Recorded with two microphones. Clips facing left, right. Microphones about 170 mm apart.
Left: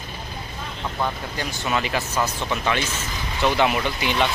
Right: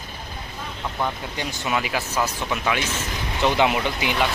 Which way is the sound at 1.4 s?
10° right (ahead or behind).